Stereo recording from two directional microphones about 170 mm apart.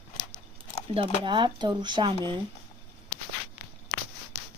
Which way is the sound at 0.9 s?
30° right (ahead or behind).